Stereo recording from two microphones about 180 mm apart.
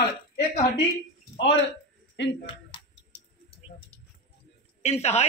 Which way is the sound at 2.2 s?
85° left.